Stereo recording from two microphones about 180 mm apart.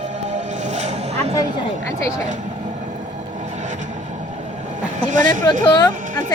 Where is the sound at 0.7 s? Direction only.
40° right (ahead or behind).